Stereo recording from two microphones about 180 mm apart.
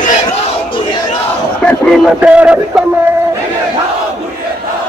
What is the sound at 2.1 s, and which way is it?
Speech, 5° right (ahead or behind).